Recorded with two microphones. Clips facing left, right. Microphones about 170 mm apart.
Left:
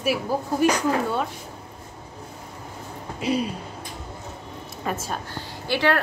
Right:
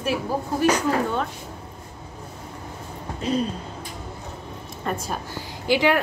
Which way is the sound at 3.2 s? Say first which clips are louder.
Even; 10° left (ahead or behind).